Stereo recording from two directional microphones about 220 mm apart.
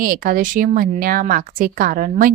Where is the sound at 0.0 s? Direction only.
40° right (ahead or behind).